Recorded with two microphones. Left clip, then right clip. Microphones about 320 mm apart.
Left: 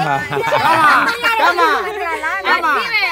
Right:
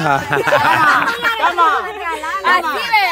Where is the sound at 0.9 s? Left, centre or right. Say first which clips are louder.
Left 2 dB; left.